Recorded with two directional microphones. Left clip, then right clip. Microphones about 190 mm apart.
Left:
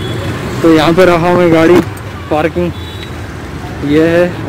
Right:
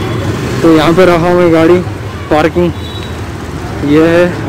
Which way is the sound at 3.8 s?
Centre (ahead or behind).